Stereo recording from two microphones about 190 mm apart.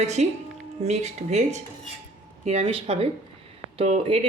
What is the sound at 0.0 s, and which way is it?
Speech, 35° right (ahead or behind).